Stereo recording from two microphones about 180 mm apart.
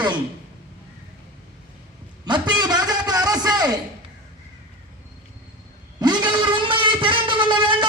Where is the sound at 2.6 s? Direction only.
20° right (ahead or behind).